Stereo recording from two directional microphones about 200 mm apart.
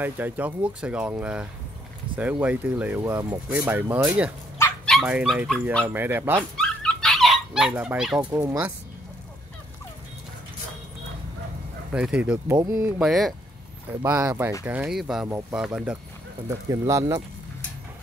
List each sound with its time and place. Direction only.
0.0 s speech: 10° right (ahead or behind)
4.6 s dog: 10° left (ahead or behind)
4.9 s speech: 5° right (ahead or behind)
6.5 s dog: 5° left (ahead or behind)
8.2 s speech: 15° right (ahead or behind)
11.9 s speech: 5° right (ahead or behind)
13.0 s speech: centre (ahead or behind)
14.0 s speech: 10° right (ahead or behind)
16.4 s speech: 15° right (ahead or behind)